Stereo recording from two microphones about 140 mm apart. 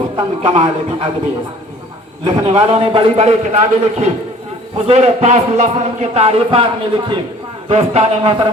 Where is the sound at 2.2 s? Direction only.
50° right (ahead or behind).